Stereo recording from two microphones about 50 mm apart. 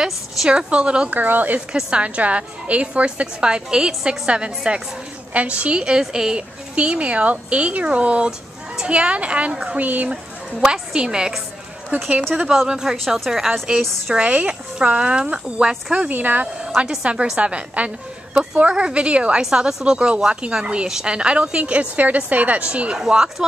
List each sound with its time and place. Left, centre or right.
0.5 s a woman's voice: right
1.1 s speech: right
1.7 s a woman's voice: centre; by 10.1 s right
10.6 s a woman's voice: centre
11.9 s a woman's voice: right
12.6 s a woman's voice: centre
14.2 s a woman's voice: right
16.1 s speech: right
16.6 s a woman's voice: centre; by 22.7 s right
22.7 s a woman's voice: centre